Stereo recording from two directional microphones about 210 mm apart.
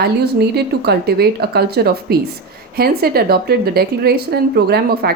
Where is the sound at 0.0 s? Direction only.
50° right (ahead or behind).